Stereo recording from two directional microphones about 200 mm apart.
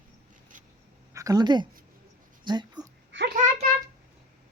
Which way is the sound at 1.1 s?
15° right (ahead or behind).